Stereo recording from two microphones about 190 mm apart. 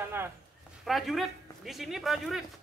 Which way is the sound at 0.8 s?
Centre (ahead or behind).